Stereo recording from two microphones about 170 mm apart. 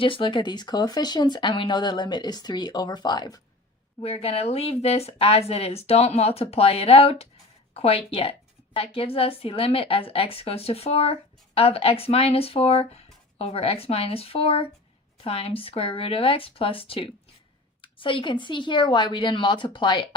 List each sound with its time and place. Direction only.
0.0 s speech: 30° left (ahead or behind)
4.0 s a woman's voice: 35° left (ahead or behind)